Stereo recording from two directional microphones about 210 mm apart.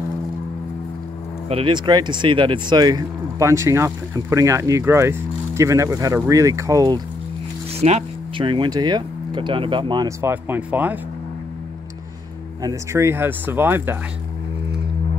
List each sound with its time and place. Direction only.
1.5 s speech: 20° right (ahead or behind)
7.8 s speech: 30° right (ahead or behind); by 11.0 s 10° right (ahead or behind)
12.6 s speech: 10° right (ahead or behind)